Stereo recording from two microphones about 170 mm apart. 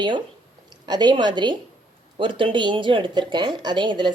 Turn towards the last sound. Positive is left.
turn(degrees=-30)  # may be behind; listen again after turning